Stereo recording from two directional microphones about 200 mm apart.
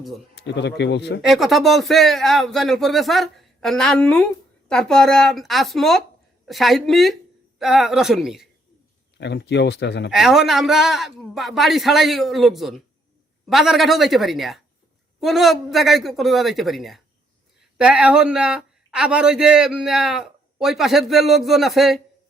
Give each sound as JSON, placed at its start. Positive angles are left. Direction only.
{"t": 0.3, "sound": "speech", "side_deg": 60}
{"t": 1.2, "sound": "speech", "side_deg": 0}
{"t": 9.1, "sound": "speech", "side_deg": 60}
{"t": 10.1, "sound": "speech", "side_deg": 0}